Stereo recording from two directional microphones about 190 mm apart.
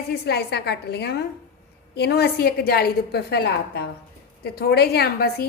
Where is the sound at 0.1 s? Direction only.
60° left (ahead or behind).